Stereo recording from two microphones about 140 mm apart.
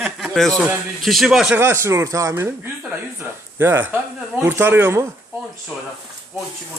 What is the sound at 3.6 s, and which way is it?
Speech, 15° right (ahead or behind).